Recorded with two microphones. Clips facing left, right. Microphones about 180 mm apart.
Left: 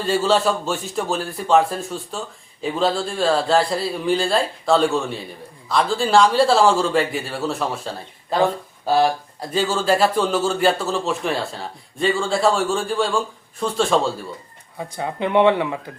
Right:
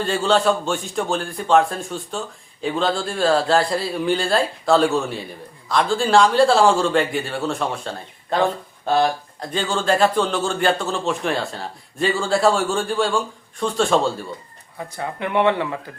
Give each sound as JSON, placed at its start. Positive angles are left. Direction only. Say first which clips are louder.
{"t": 0.0, "sound": "speech", "louder": "even", "side_deg": 5}
{"t": 14.8, "sound": "speech", "louder": "left 2 dB", "side_deg": 15}